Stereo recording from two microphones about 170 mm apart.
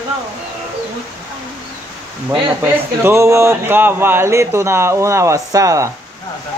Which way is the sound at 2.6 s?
10° right (ahead or behind).